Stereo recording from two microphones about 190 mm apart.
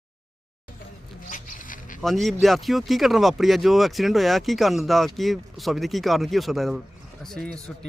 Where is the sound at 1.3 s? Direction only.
45° left (ahead or behind).